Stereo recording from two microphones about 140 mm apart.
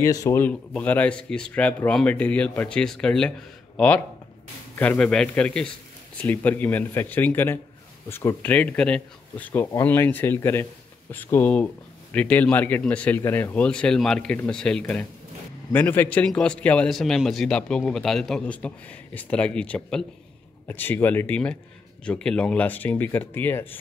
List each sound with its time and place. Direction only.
0.0 s speech: 20° left (ahead or behind)
0.4 s speech: 10° left (ahead or behind)